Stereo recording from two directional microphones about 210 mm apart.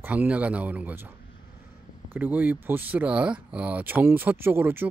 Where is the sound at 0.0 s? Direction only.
10° right (ahead or behind).